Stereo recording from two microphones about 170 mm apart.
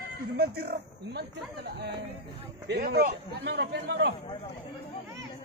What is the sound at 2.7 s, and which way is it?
A man's voice, 75° right (ahead or behind).